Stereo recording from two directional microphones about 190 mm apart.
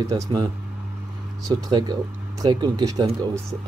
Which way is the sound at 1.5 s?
20° right (ahead or behind).